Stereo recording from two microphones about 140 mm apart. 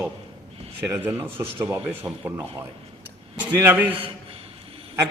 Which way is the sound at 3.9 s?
45° right (ahead or behind).